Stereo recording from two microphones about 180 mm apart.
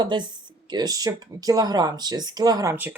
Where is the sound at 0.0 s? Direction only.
25° right (ahead or behind).